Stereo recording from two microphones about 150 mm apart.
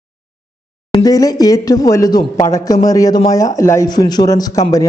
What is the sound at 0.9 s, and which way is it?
Speech, 25° left (ahead or behind).